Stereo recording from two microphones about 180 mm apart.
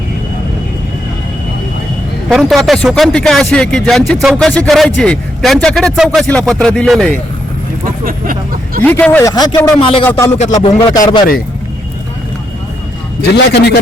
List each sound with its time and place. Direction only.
2.3 s speech: centre (ahead or behind)
8.0 s speech: 50° right (ahead or behind)
8.8 s speech: 10° left (ahead or behind)
9.3 s speech: 20° left (ahead or behind)
10.1 s speech: 15° left (ahead or behind)
10.3 s speech: 40° left (ahead or behind)
10.8 s speech: 25° left (ahead or behind)
13.3 s a man's voice: 65° left (ahead or behind)